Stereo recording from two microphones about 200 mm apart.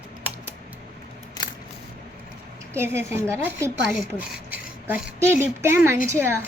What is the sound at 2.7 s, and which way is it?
A woman's voice, 10° right (ahead or behind).